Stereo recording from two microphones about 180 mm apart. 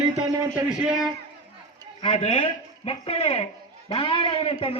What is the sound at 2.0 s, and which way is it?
A man's voice, 30° left (ahead or behind).